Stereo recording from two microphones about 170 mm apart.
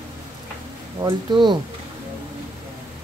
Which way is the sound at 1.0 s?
25° right (ahead or behind).